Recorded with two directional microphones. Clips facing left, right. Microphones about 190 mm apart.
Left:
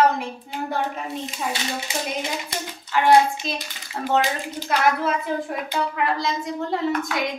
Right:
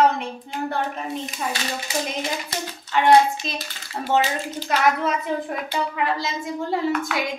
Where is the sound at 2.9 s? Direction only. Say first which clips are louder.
Right 1 dB; 5° left (ahead or behind).